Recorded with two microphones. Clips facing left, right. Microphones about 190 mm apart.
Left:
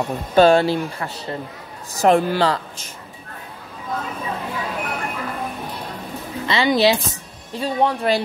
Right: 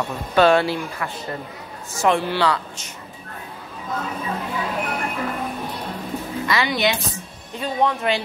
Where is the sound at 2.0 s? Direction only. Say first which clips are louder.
Left 4 dB; 45° left (ahead or behind).